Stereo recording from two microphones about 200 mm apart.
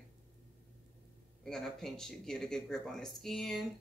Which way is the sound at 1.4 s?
Centre (ahead or behind).